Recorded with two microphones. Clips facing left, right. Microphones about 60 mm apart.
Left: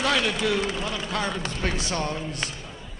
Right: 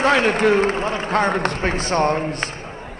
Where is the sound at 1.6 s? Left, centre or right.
Right.